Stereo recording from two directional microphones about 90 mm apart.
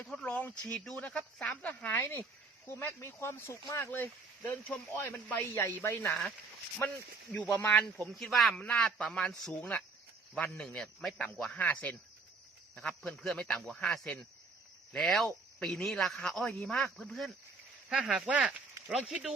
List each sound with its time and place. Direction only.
0.0 s speech: 10° left (ahead or behind)
2.0 s speech: 25° left (ahead or behind)
7.3 s speech: 15° left (ahead or behind)
8.2 s speech: 5° left (ahead or behind)
13.0 s speech: 5° left (ahead or behind)